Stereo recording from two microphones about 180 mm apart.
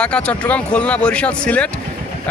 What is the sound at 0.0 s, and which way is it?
Speech, 5° left (ahead or behind).